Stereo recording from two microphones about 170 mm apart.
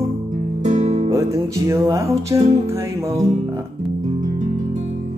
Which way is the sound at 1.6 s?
15° right (ahead or behind).